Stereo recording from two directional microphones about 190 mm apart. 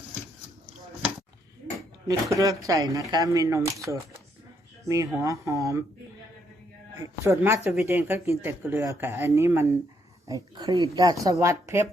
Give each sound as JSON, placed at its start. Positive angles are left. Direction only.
{"t": 2.3, "sound": "speech", "side_deg": -15}
{"t": 7.3, "sound": "speech", "side_deg": -15}